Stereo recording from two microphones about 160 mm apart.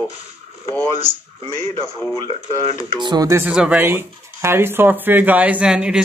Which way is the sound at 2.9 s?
30° right (ahead or behind).